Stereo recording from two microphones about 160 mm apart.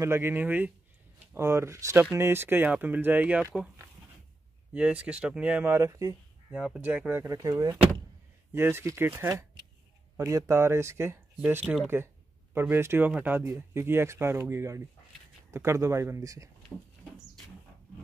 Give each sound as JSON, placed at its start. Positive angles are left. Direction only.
{"t": 0.0, "sound": "speech", "side_deg": -15}
{"t": 4.7, "sound": "speech", "side_deg": -5}
{"t": 6.5, "sound": "speech", "side_deg": -10}
{"t": 7.3, "sound": "speech", "side_deg": -25}
{"t": 11.6, "sound": "speech", "side_deg": -5}
{"t": 12.5, "sound": "speech", "side_deg": -15}
{"t": 16.7, "sound": "speech", "side_deg": 0}